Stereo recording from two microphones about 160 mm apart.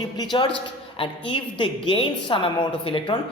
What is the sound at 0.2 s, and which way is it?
A man's voice, 30° left (ahead or behind).